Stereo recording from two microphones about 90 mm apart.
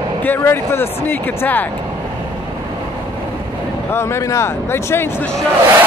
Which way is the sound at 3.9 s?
30° left (ahead or behind).